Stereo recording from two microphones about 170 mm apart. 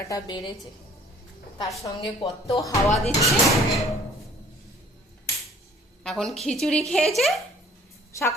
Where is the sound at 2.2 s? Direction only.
35° left (ahead or behind).